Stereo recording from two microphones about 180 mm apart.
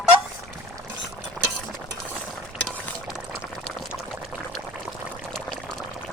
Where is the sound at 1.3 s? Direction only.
Centre (ahead or behind).